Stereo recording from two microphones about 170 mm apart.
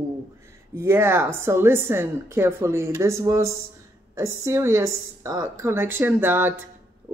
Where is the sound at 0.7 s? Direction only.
15° right (ahead or behind).